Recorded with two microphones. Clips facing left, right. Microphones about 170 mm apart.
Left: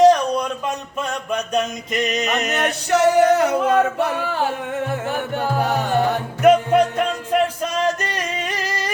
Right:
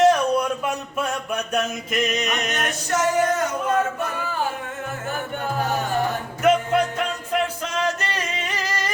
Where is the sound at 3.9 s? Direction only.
65° left (ahead or behind).